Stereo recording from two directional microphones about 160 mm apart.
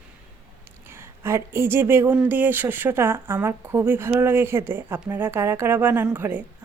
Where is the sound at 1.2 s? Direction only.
15° right (ahead or behind).